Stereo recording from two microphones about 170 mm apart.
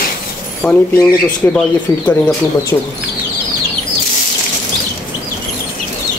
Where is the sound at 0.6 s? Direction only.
10° left (ahead or behind).